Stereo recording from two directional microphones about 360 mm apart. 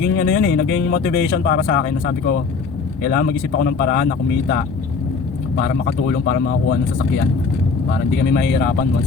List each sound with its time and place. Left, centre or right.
0.0 s speech: left
8.2 s speech: left